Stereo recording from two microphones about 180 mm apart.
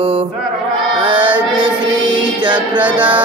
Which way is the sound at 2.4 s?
25° right (ahead or behind).